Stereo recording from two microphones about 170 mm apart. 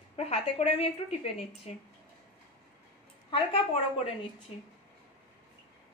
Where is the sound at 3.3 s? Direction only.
30° left (ahead or behind).